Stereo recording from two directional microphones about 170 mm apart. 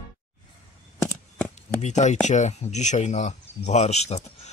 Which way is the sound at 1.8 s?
45° left (ahead or behind).